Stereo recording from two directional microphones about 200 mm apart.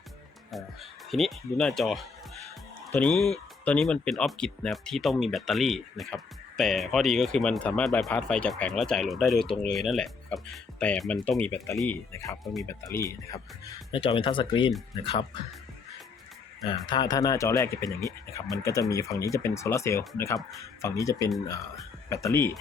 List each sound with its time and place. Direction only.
0.5 s speech: centre (ahead or behind); by 13.4 s 15° left (ahead or behind)
13.9 s speech: 25° left (ahead or behind)
16.6 s speech: 25° left (ahead or behind)